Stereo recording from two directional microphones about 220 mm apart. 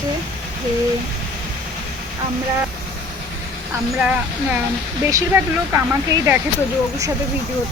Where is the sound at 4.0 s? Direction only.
5° right (ahead or behind).